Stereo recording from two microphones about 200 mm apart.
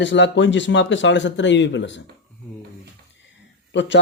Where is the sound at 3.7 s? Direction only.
65° left (ahead or behind).